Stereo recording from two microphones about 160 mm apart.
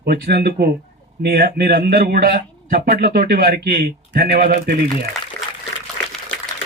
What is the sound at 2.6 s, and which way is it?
A man's voice, 65° right (ahead or behind).